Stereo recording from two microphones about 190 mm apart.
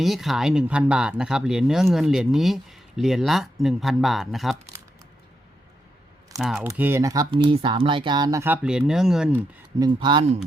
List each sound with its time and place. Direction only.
0.0 s speech: centre (ahead or behind)
6.4 s speech: centre (ahead or behind)
6.7 s speech: 10° right (ahead or behind)
8.6 s speech: 5° right (ahead or behind)
9.8 s speech: 25° right (ahead or behind)